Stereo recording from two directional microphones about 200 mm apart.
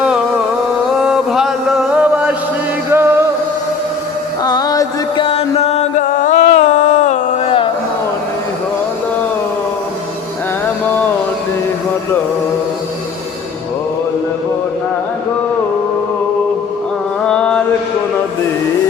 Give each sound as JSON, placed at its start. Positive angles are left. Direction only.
{"t": 1.0, "sound": "chant", "side_deg": 0}
{"t": 2.9, "sound": "music", "side_deg": -10}
{"t": 4.4, "sound": "music", "side_deg": 20}
{"t": 17.2, "sound": "mantra", "side_deg": 5}